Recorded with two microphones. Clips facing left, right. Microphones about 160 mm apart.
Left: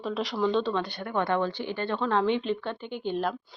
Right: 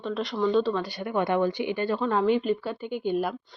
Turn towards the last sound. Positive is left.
turn(degrees=-10)  # may be behind; listen again after turning